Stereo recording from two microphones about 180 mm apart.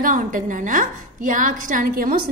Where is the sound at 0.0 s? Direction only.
45° right (ahead or behind).